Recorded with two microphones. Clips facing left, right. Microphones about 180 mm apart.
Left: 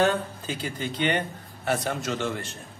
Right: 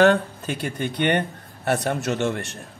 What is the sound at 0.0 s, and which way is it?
A man's voice, 75° right (ahead or behind).